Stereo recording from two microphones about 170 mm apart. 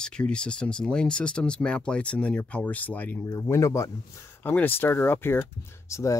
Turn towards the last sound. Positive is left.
turn(degrees=20)  # may be behind; listen again after turning